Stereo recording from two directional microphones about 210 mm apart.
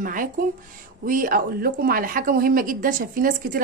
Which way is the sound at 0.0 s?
40° right (ahead or behind).